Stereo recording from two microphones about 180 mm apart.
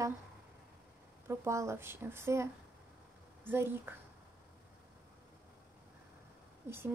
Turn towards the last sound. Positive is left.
turn(degrees=-15)  # may be behind; listen again after turning